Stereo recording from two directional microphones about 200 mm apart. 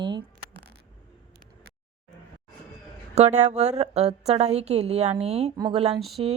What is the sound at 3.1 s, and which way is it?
A woman's voice, 35° right (ahead or behind).